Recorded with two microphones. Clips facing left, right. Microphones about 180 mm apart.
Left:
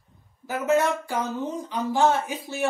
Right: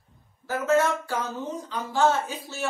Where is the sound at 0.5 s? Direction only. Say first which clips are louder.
Even; 15° left (ahead or behind).